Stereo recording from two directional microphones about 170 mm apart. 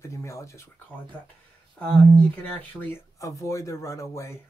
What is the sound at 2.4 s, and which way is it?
Speech, 10° left (ahead or behind).